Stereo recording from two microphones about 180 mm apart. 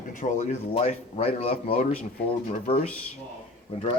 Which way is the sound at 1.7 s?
45° left (ahead or behind).